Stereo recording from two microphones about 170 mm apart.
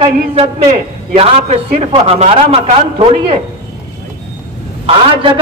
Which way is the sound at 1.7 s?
35° right (ahead or behind).